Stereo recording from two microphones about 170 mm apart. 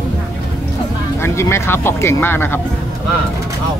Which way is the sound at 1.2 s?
15° left (ahead or behind).